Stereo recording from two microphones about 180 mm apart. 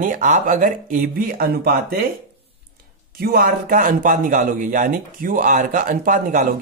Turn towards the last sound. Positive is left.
turn(degrees=-45)  # may be behind; listen again after turning